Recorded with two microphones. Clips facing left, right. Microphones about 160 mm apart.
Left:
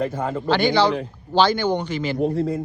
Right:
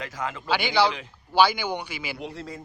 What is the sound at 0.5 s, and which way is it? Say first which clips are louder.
Speech: left 4 dB; 10° right (ahead or behind).